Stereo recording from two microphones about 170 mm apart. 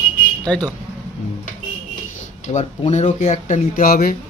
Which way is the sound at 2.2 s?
45° left (ahead or behind).